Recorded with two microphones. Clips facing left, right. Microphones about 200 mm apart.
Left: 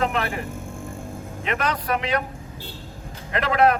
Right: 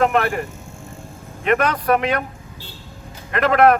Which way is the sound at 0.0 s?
55° right (ahead or behind).